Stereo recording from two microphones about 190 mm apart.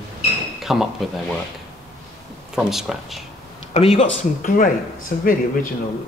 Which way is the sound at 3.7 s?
35° left (ahead or behind).